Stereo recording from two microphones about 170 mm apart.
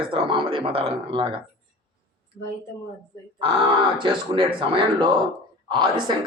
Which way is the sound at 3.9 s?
30° right (ahead or behind).